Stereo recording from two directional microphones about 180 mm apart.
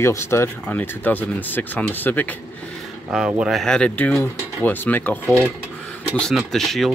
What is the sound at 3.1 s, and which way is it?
Speech, 5° right (ahead or behind).